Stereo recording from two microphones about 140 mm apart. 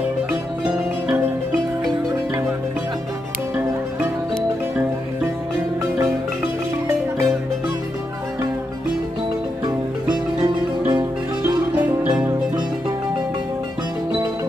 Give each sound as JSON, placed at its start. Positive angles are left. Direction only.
{"t": 5.8, "sound": "marimba", "side_deg": -25}
{"t": 9.7, "sound": "music", "side_deg": -30}